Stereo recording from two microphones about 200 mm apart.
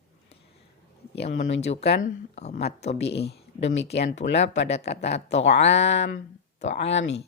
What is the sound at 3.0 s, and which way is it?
Speech, 55° left (ahead or behind).